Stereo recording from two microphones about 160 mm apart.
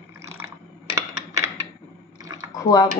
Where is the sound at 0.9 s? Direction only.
20° right (ahead or behind).